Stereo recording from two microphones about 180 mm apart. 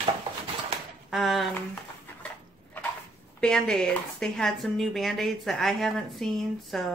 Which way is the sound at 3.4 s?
5° left (ahead or behind).